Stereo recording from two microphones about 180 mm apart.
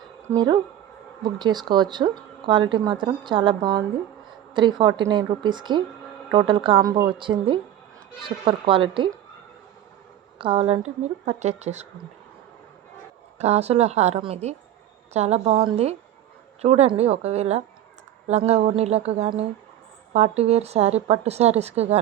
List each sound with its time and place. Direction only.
0.3 s speech: 25° right (ahead or behind)
10.3 s speech: 30° right (ahead or behind)
11.3 s a woman's voice: 40° right (ahead or behind)
13.4 s a woman's voice: 35° right (ahead or behind)